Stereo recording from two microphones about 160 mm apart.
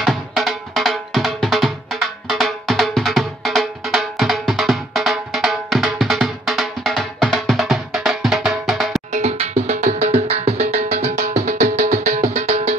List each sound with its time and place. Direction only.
0.0 s drum: centre (ahead or behind)
9.1 s music: 40° right (ahead or behind)